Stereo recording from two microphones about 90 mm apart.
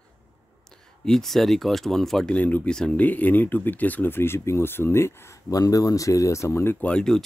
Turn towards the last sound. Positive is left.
turn(degrees=5)  # may be behind; listen again after turning